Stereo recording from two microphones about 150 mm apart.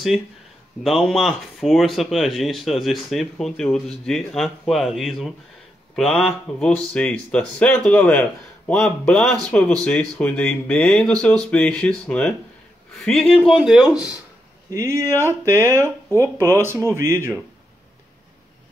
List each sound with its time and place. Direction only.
0.8 s speech: centre (ahead or behind)
13.6 s speech: 5° right (ahead or behind)
14.7 s speech: 20° right (ahead or behind)